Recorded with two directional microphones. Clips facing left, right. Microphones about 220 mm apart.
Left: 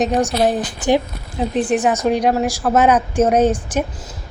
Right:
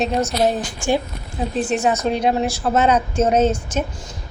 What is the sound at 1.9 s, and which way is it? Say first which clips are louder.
Speech: left 2 dB; 10° left (ahead or behind).